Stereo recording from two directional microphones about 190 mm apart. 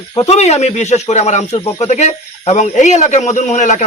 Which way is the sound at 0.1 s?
30° left (ahead or behind).